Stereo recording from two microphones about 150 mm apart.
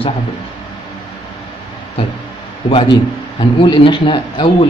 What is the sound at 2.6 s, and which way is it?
Speech, 35° left (ahead or behind).